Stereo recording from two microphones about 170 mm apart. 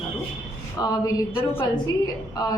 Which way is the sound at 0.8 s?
20° left (ahead or behind).